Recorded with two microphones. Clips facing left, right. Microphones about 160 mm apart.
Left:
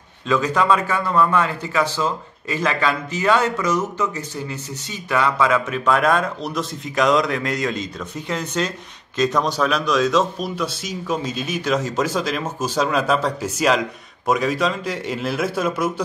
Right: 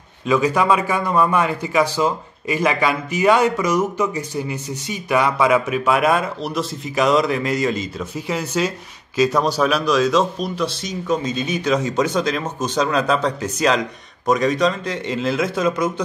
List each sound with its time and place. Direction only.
0.3 s a man's voice: 10° right (ahead or behind); by 15.9 s 5° left (ahead or behind)